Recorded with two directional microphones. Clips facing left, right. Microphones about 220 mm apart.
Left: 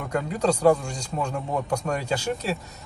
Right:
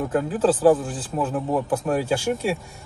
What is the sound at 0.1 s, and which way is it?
A man's voice, 5° right (ahead or behind).